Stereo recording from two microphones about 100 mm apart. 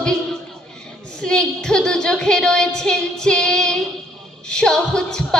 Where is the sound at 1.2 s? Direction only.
10° left (ahead or behind).